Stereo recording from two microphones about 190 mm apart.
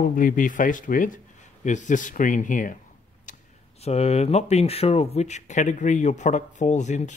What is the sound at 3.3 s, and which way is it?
Speech, 35° left (ahead or behind).